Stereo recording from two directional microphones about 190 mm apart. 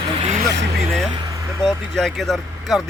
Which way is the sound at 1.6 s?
Centre (ahead or behind).